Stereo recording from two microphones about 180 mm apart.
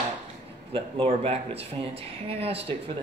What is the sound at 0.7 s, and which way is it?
Speech, 30° right (ahead or behind).